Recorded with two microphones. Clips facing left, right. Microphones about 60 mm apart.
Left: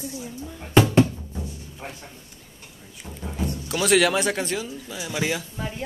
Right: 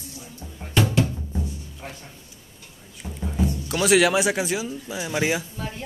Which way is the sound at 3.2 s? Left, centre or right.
Centre.